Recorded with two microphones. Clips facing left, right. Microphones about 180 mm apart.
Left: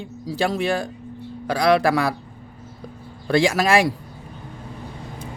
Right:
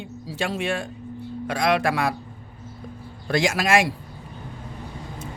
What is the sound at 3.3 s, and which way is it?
Speech, 30° left (ahead or behind).